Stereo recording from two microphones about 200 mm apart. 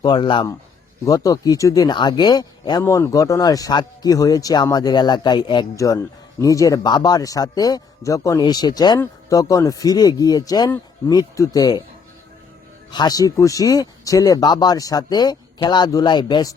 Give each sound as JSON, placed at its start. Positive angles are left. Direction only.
{"t": 0.0, "sound": "a man's voice", "side_deg": 20}
{"t": 12.9, "sound": "a man's voice", "side_deg": 20}